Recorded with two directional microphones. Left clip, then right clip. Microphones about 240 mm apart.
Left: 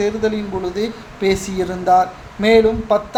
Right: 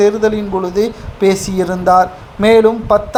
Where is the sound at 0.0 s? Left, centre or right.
Right.